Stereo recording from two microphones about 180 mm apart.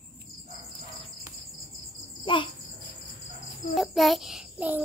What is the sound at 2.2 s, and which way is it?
Speech, 25° left (ahead or behind).